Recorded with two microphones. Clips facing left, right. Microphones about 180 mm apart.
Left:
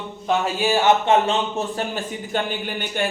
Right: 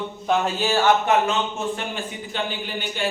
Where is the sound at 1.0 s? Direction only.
30° left (ahead or behind).